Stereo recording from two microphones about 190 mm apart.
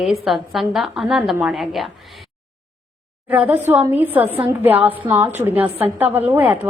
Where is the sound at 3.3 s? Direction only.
10° right (ahead or behind).